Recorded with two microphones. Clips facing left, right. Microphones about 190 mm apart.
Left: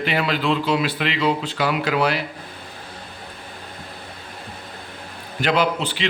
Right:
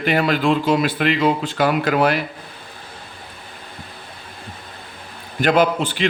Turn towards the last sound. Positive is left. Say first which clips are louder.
# right 4 dB
turn(degrees=-50)  # may be behind; listen again after turning